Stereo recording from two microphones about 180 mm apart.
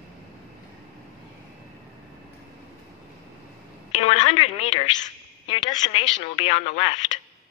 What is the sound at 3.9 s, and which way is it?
A woman's voice, 40° left (ahead or behind).